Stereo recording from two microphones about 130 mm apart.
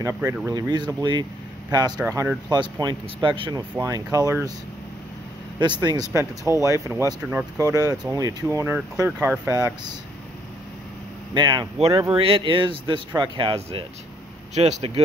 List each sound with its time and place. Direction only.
0.0 s speech: 20° right (ahead or behind)
2.6 s speech: 35° right (ahead or behind)
3.8 s speech: 25° right (ahead or behind)
5.6 s speech: 35° right (ahead or behind)
11.3 s speech: 35° right (ahead or behind)
12.2 s speech: 45° right (ahead or behind)
14.5 s speech: 60° right (ahead or behind)